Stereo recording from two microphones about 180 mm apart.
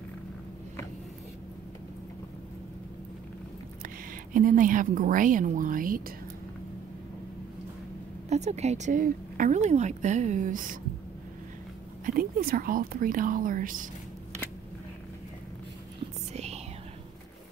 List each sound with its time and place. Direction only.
4.3 s speech: 50° right (ahead or behind)
8.3 s a woman's voice: 40° right (ahead or behind)
12.1 s speech: 55° right (ahead or behind)